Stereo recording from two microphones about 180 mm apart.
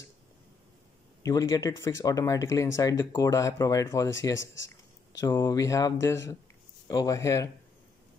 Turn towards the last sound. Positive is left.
turn(degrees=15)  # may be behind; listen again after turning